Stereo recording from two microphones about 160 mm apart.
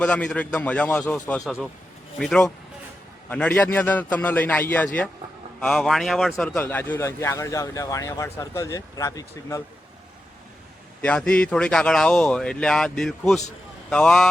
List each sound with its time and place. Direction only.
0.0 s a man's voice: 5° left (ahead or behind)
6.6 s speech: 15° left (ahead or behind)
11.0 s speech: 5° left (ahead or behind)